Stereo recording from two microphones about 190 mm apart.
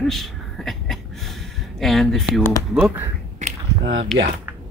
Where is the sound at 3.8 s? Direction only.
70° right (ahead or behind).